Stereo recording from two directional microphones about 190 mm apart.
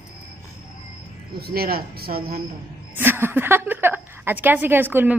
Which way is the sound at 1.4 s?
55° right (ahead or behind).